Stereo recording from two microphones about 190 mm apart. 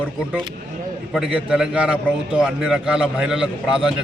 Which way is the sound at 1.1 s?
5° right (ahead or behind).